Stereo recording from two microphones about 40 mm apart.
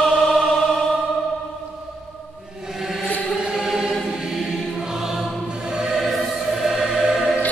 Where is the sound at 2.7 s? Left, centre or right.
Centre.